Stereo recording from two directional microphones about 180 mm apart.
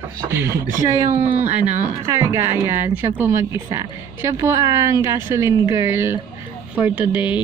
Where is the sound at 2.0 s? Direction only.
15° right (ahead or behind).